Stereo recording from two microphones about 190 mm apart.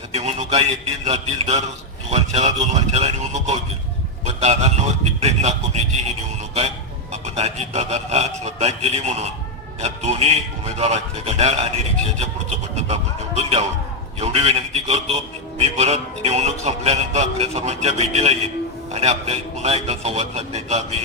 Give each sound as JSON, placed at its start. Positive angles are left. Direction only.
{"t": 0.1, "sound": "a man's voice", "side_deg": -35}
{"t": 7.1, "sound": "a man's voice", "side_deg": -35}